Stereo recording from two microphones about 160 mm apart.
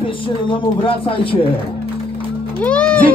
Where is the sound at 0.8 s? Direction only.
35° left (ahead or behind).